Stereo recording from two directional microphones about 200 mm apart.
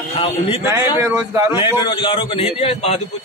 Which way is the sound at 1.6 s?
25° left (ahead or behind).